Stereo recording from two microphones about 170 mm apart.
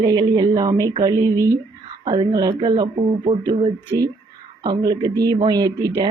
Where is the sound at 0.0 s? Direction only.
25° right (ahead or behind).